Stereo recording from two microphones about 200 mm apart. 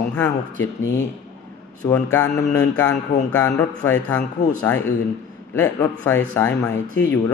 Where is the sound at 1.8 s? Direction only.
10° left (ahead or behind).